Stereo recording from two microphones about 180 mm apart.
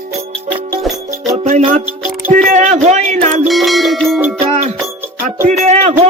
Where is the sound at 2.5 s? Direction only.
45° right (ahead or behind).